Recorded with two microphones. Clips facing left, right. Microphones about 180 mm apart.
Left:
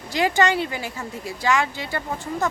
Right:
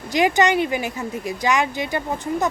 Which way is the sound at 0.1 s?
15° right (ahead or behind).